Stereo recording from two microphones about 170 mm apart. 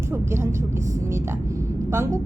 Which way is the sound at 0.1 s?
15° right (ahead or behind).